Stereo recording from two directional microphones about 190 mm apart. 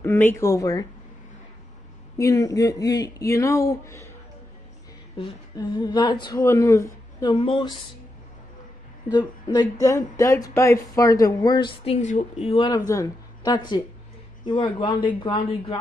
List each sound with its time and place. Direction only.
0.0 s speech: 10° left (ahead or behind)
2.1 s speech: 15° left (ahead or behind)
5.1 s speech: 25° left (ahead or behind)
9.1 s speech: 20° left (ahead or behind)